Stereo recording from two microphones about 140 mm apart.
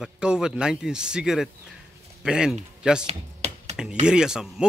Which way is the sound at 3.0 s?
50° right (ahead or behind).